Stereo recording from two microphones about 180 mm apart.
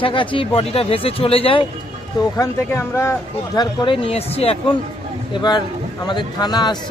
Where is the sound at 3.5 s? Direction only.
25° left (ahead or behind).